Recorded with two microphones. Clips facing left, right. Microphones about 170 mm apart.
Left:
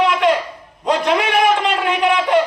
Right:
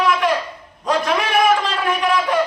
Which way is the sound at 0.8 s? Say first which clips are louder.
Left 3 dB; 25° left (ahead or behind).